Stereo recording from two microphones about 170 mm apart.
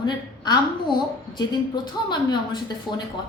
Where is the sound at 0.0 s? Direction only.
25° left (ahead or behind).